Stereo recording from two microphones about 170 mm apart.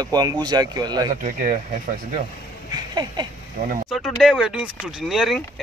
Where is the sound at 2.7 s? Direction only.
25° right (ahead or behind).